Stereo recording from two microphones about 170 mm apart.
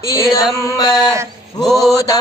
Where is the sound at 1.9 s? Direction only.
20° left (ahead or behind).